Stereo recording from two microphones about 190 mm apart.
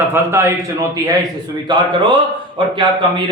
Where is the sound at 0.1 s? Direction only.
15° right (ahead or behind).